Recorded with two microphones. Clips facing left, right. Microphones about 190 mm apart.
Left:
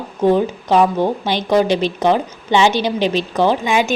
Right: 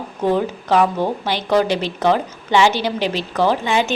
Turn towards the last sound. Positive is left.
turn(degrees=15)  # may be behind; listen again after turning